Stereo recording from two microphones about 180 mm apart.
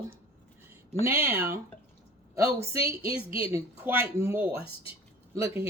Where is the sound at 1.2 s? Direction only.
10° right (ahead or behind).